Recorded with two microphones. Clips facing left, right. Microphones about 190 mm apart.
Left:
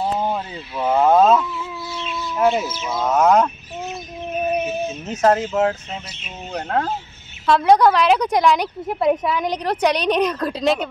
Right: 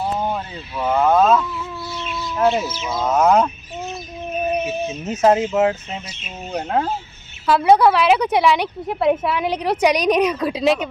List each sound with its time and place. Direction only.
0.7 s speech: 15° left (ahead or behind)
2.0 s speech: centre (ahead or behind)
4.6 s a woman's voice: 5° right (ahead or behind)